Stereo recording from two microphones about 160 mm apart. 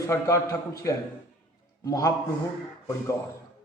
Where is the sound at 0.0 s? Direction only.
20° left (ahead or behind).